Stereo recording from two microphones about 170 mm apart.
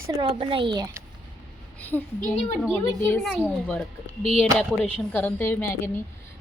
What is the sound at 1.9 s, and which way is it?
Speech, 5° left (ahead or behind).